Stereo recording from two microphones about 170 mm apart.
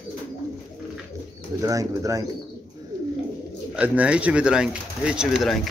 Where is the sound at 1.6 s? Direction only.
20° right (ahead or behind).